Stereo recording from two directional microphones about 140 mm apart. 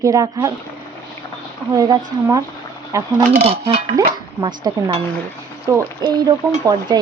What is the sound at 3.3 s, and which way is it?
Speech, 45° right (ahead or behind).